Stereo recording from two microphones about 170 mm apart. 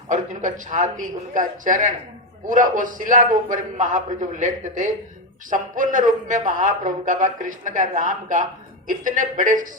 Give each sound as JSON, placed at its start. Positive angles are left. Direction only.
{"t": 0.1, "sound": "a man's voice", "side_deg": -45}